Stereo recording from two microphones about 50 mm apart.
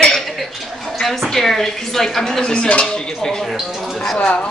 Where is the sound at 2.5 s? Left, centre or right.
Left.